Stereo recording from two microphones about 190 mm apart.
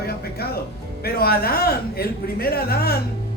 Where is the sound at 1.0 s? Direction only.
55° left (ahead or behind).